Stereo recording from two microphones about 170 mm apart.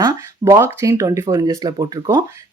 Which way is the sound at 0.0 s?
20° right (ahead or behind).